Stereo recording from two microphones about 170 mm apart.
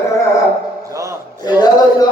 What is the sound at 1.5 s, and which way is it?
Speech, 25° left (ahead or behind).